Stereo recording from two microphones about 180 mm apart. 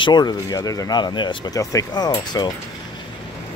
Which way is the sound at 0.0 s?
25° left (ahead or behind).